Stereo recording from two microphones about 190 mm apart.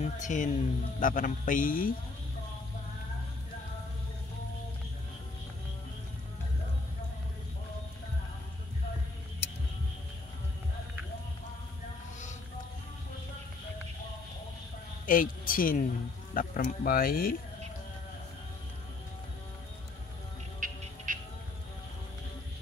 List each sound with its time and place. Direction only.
0.0 s a man's voice: 40° left (ahead or behind)
15.0 s a man's voice: 45° left (ahead or behind)
20.6 s music: 45° right (ahead or behind)